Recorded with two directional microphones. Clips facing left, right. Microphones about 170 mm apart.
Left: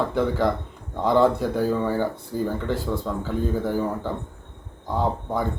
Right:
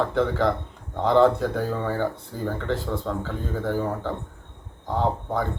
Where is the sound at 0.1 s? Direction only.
10° left (ahead or behind).